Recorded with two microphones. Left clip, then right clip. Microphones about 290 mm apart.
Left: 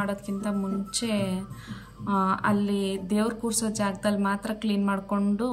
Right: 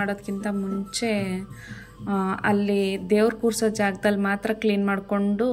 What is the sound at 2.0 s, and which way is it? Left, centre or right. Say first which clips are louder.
Speech: even; left.